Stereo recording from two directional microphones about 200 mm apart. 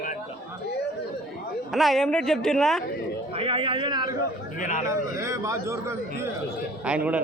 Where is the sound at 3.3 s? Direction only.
25° right (ahead or behind).